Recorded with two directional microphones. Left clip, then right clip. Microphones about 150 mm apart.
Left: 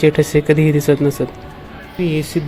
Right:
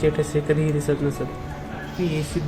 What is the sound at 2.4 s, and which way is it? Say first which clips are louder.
Speech: left 8 dB; 50° left (ahead or behind).